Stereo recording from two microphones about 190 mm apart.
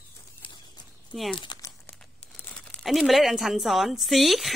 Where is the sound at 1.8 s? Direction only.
5° left (ahead or behind).